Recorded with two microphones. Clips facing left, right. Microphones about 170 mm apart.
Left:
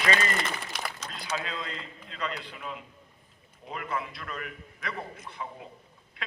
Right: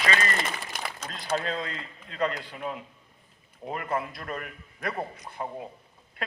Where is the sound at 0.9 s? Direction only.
50° right (ahead or behind).